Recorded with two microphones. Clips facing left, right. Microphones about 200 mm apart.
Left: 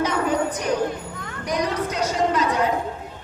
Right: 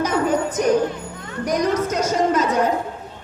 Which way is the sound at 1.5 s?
45° right (ahead or behind).